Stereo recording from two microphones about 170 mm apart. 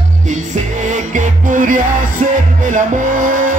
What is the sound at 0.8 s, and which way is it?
Music, 50° right (ahead or behind).